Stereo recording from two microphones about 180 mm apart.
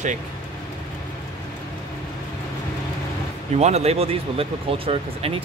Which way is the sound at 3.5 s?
35° right (ahead or behind).